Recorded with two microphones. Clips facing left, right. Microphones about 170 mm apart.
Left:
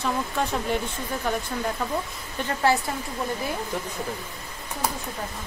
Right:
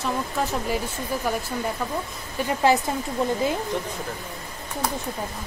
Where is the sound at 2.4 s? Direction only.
15° right (ahead or behind).